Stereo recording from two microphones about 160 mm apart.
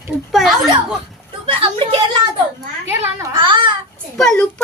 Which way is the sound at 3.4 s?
30° right (ahead or behind).